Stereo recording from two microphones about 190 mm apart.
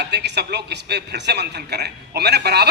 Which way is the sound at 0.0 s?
60° right (ahead or behind).